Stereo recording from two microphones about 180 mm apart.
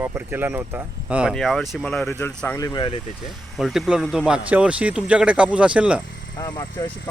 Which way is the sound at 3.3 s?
Centre (ahead or behind).